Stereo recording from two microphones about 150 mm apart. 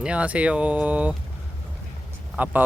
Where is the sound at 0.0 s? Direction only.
10° right (ahead or behind).